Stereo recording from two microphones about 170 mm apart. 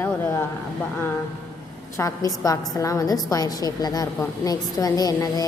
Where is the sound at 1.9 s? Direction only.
20° left (ahead or behind).